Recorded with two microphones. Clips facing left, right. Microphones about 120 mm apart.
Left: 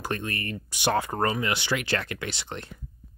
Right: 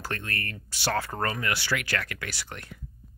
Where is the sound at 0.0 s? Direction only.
20° left (ahead or behind).